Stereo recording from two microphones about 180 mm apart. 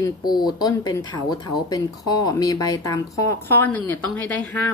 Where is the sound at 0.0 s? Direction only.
20° left (ahead or behind).